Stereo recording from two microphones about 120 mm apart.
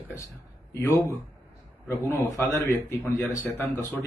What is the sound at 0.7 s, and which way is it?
A man's voice, 20° left (ahead or behind).